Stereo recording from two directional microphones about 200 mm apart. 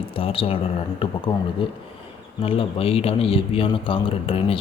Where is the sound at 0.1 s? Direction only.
25° left (ahead or behind).